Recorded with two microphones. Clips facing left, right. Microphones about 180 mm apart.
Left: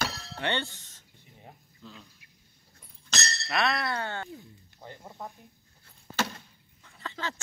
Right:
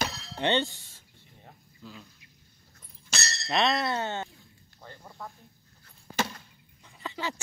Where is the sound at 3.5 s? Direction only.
20° right (ahead or behind).